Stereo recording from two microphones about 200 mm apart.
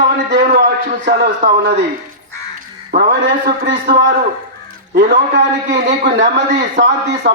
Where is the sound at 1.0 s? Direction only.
50° right (ahead or behind).